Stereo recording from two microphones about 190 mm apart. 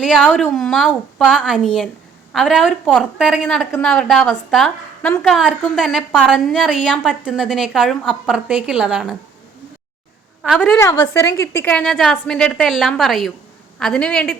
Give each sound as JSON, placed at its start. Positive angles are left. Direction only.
{"t": 0.0, "sound": "a woman's voice", "side_deg": 5}
{"t": 1.4, "sound": "a woman's voice", "side_deg": -5}
{"t": 10.6, "sound": "a woman's voice", "side_deg": 15}